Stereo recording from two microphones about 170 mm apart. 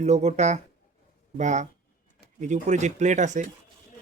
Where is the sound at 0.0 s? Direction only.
40° right (ahead or behind).